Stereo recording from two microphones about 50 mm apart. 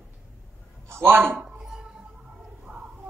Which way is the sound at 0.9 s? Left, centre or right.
Right.